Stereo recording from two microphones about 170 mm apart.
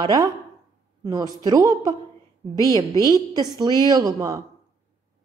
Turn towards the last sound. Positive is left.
turn(degrees=-20)  # may be behind; listen again after turning